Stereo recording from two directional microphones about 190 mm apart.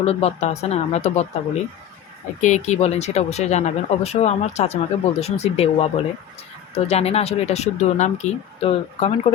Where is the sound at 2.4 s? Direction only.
35° left (ahead or behind).